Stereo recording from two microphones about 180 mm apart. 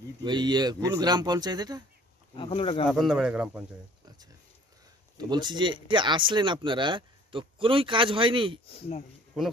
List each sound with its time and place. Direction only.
0.2 s speech: 25° right (ahead or behind)
2.3 s speech: 30° left (ahead or behind)
2.9 s speech: 5° right (ahead or behind)
5.1 s speech: 25° right (ahead or behind)
8.6 s speech: 35° left (ahead or behind)